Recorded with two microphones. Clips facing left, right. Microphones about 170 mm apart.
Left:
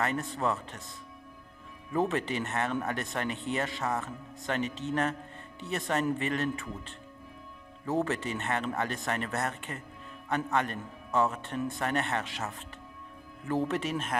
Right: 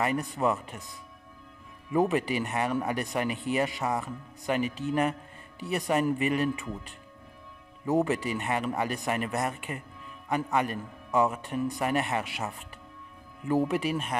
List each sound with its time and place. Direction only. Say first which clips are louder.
0.0 s speech: right 3 dB; 15° right (ahead or behind)
1.9 s speech: right 4 dB; 15° right (ahead or behind)